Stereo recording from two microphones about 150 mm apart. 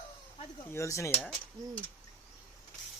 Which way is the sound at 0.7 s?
20° left (ahead or behind).